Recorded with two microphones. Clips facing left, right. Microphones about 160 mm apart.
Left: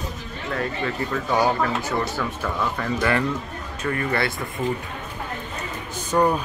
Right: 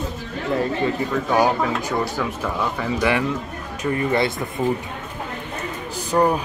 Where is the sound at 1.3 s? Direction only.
10° right (ahead or behind).